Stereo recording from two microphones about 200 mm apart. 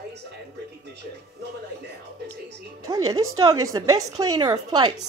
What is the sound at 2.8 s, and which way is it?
A woman's voice, 15° right (ahead or behind).